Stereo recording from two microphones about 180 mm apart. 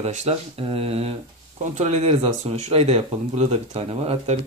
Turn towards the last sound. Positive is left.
turn(degrees=-35)  # may be behind; listen again after turning